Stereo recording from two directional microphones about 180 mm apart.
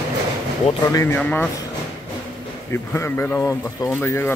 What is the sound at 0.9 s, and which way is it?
Speech, 20° left (ahead or behind).